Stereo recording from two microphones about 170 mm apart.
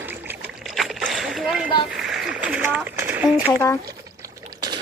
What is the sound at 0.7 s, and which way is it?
Rowboat, centre (ahead or behind).